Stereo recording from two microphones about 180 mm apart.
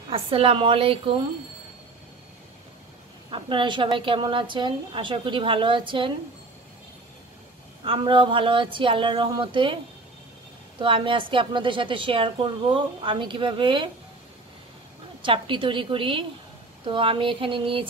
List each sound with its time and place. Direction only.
0.1 s a woman's voice: 30° right (ahead or behind)
3.3 s a woman's voice: 30° right (ahead or behind)
7.8 s a woman's voice: 30° right (ahead or behind)
10.8 s a woman's voice: 30° right (ahead or behind)
15.2 s a woman's voice: 30° right (ahead or behind)